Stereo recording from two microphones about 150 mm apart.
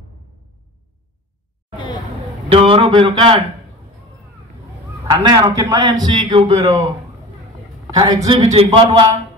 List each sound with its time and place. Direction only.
2.5 s speech: 35° right (ahead or behind)
5.1 s a man's voice: 25° right (ahead or behind)
6.2 s speech: 45° right (ahead or behind)
7.9 s a man's voice: 25° right (ahead or behind)
8.4 s speech: 45° right (ahead or behind)
8.6 s a man's voice: 25° right (ahead or behind)